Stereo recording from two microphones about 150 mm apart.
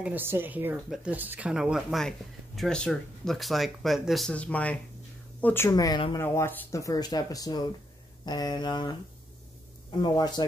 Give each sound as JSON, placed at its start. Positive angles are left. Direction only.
{"t": 0.0, "sound": "a woman's voice", "side_deg": -15}